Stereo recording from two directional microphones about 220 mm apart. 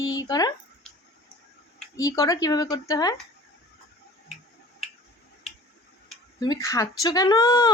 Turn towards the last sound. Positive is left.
turn(degrees=15)  # may be behind; listen again after turning